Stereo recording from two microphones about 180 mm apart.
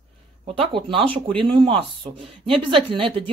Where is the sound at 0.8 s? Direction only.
30° right (ahead or behind).